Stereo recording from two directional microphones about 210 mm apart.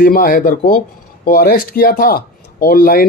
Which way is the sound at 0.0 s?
40° left (ahead or behind).